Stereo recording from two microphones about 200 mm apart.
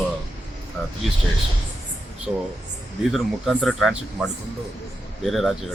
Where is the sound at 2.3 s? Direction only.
5° right (ahead or behind).